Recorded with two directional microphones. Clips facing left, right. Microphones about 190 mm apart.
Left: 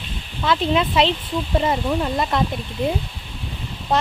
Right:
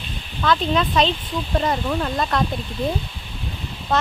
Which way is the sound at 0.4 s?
20° left (ahead or behind).